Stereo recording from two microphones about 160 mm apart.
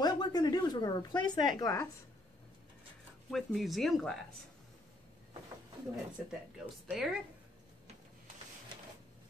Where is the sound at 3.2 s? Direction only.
Centre (ahead or behind).